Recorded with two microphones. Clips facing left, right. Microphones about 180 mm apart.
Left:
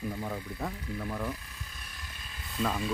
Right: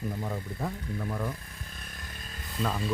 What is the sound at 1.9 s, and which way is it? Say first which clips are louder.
Chainsaw: right 3 dB; 45° right (ahead or behind).